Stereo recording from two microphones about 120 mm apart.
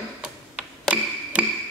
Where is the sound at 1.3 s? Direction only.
10° right (ahead or behind).